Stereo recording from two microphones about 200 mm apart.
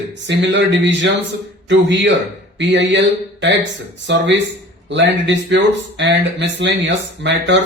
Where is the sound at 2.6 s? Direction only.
60° right (ahead or behind).